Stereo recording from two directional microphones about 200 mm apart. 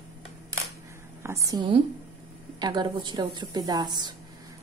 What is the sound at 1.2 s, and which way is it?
A woman's voice, 15° right (ahead or behind).